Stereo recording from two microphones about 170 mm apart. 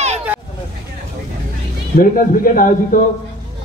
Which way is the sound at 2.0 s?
55° left (ahead or behind).